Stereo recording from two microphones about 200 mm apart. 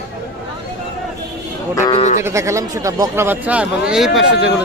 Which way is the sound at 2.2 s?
15° right (ahead or behind).